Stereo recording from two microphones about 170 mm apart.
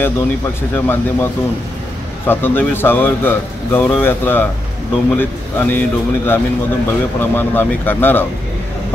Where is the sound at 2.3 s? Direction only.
10° left (ahead or behind).